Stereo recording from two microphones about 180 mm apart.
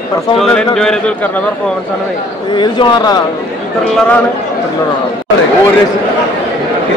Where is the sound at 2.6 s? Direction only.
25° left (ahead or behind).